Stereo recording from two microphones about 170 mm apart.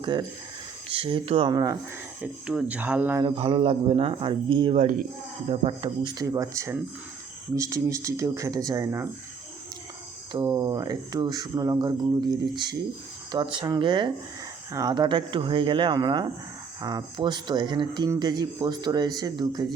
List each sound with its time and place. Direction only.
0.0 s a man's voice: 25° right (ahead or behind)
2.2 s speech: 5° right (ahead or behind)
3.3 s a man's voice: 35° right (ahead or behind)
4.8 s speech: 50° right (ahead or behind)
5.5 s speech: 30° right (ahead or behind)
10.3 s speech: 25° right (ahead or behind)